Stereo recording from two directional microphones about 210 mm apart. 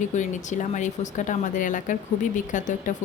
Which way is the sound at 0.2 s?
35° left (ahead or behind).